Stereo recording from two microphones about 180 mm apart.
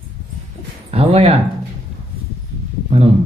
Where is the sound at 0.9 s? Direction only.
35° right (ahead or behind).